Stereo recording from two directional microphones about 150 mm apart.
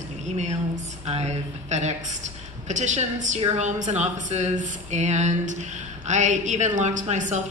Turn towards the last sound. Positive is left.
turn(degrees=-55)  # may be behind; listen again after turning